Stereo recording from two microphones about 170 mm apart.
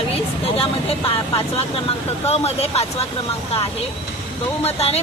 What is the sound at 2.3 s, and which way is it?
Speech, 35° left (ahead or behind).